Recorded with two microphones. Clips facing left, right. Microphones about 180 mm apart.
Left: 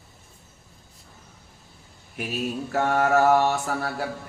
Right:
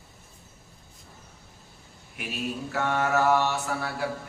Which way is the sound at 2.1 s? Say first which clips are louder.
Left 4 dB; 45° left (ahead or behind).